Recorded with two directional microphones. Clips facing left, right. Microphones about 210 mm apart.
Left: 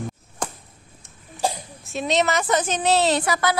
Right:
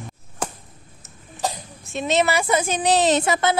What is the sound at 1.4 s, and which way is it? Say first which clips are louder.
A child's voice: left 2 dB; centre (ahead or behind).